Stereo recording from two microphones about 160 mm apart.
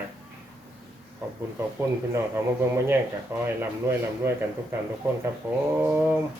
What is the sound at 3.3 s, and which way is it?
Speech, 15° right (ahead or behind).